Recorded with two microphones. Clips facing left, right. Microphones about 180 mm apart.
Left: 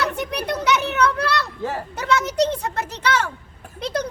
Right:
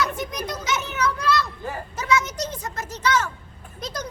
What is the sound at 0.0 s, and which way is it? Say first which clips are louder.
Children playing: left 2 dB; 65° left (ahead or behind).